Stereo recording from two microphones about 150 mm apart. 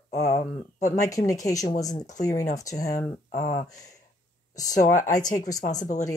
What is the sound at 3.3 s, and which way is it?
Speech, 65° left (ahead or behind).